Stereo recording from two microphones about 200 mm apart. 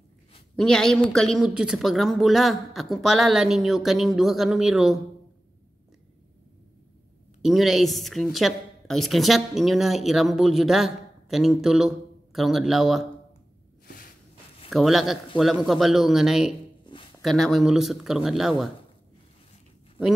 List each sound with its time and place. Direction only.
0.6 s a woman's voice: 5° left (ahead or behind)
7.4 s a woman's voice: centre (ahead or behind)
13.8 s a sound: 45° left (ahead or behind)
14.7 s a woman's voice: centre (ahead or behind)
16.8 s a sound: 25° left (ahead or behind)
17.2 s a woman's voice: centre (ahead or behind)